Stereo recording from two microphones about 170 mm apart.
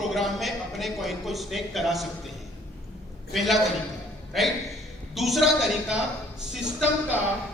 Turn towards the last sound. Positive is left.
turn(degrees=-5)  # may be behind; listen again after turning